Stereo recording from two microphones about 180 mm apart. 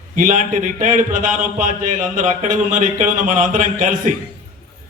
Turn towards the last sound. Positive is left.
turn(degrees=-45)  # may be behind; listen again after turning